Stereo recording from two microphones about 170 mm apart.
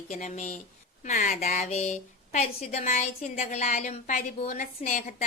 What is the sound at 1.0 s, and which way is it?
A woman's voice, 45° left (ahead or behind).